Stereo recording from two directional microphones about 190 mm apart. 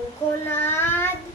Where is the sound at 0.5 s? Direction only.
10° left (ahead or behind).